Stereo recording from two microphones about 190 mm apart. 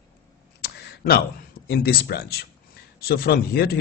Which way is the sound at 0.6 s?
55° left (ahead or behind).